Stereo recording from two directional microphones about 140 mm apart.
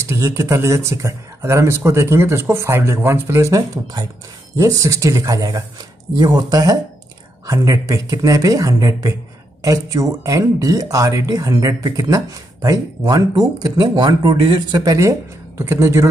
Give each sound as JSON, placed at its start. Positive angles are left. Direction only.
{"t": 0.1, "sound": "speech", "side_deg": -20}